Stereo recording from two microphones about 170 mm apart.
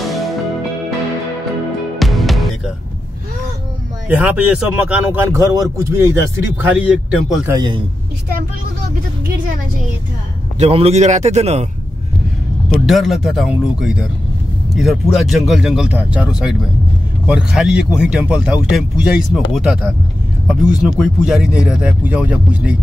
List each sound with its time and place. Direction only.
2.0 s music: centre (ahead or behind)
4.2 s speech: 10° right (ahead or behind)
6.6 s speech: 5° right (ahead or behind)
7.4 s a man's voice: 25° right (ahead or behind)
10.6 s a man's voice: 35° right (ahead or behind)
12.6 s speech: centre (ahead or behind)